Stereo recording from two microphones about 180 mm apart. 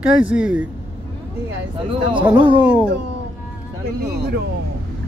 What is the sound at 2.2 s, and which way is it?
Speech, 10° right (ahead or behind).